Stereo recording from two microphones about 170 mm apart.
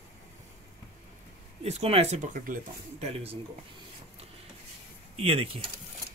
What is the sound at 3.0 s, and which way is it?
Speech, 35° right (ahead or behind).